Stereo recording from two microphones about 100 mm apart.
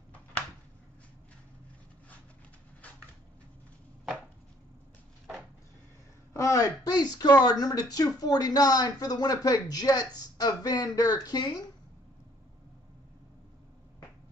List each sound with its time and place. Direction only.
6.3 s speech: 35° left (ahead or behind)